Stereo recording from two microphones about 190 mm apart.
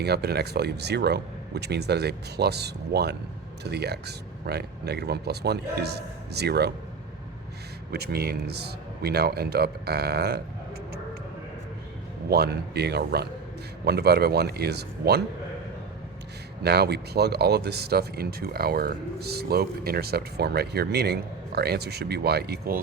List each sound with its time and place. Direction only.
0.0 s speech: 60° right (ahead or behind)
7.9 s speech: 55° right (ahead or behind)
12.3 s speech: 60° right (ahead or behind)
16.6 s speech: 60° right (ahead or behind)